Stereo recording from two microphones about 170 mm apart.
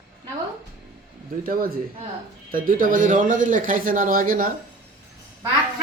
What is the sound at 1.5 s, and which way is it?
A woman's voice, 60° right (ahead or behind).